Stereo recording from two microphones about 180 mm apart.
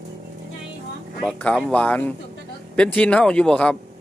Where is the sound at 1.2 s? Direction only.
5° left (ahead or behind).